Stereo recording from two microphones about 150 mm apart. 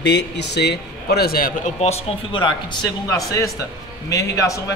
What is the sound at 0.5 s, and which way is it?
A man's voice, 90° left.